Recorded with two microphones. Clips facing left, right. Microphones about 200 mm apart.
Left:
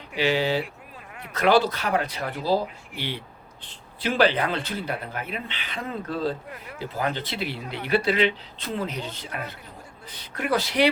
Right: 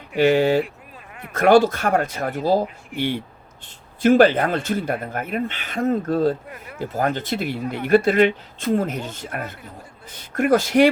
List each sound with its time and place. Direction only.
0.2 s speech: 50° right (ahead or behind)